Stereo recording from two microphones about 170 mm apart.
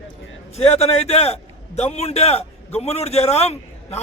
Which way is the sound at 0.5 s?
40° left (ahead or behind).